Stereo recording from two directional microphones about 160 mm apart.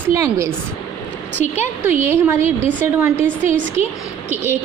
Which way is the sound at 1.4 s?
45° left (ahead or behind).